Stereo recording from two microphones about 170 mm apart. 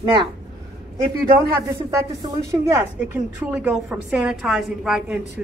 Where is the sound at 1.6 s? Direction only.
15° right (ahead or behind).